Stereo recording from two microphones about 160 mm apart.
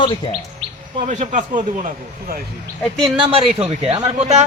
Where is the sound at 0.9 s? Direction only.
50° right (ahead or behind).